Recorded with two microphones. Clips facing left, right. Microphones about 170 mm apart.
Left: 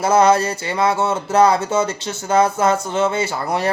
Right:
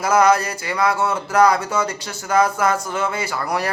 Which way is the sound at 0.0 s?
25° left (ahead or behind).